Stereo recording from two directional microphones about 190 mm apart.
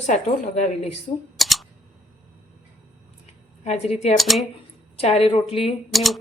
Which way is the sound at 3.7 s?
35° left (ahead or behind).